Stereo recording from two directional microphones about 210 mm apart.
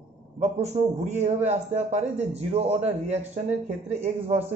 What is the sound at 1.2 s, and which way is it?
Speech, 35° right (ahead or behind).